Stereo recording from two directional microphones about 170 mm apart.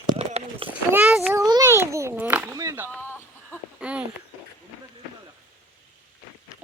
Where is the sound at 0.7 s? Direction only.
10° right (ahead or behind).